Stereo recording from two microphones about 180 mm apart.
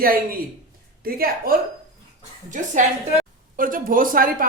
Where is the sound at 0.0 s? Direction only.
55° right (ahead or behind).